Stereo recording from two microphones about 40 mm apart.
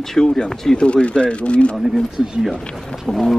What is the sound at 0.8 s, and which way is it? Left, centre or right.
Speech, left.